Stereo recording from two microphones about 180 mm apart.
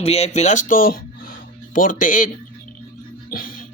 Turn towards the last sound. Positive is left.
turn(degrees=55)  # may be behind; listen again after turning